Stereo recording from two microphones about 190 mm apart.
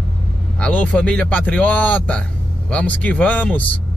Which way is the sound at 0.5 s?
5° left (ahead or behind).